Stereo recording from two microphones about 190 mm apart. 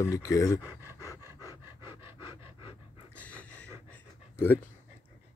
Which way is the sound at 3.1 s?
5° left (ahead or behind).